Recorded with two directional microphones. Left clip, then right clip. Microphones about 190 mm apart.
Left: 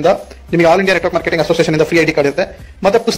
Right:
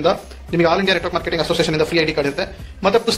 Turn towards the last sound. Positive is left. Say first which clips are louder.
# left 4 dB
turn(degrees=30)  # may be behind; listen again after turning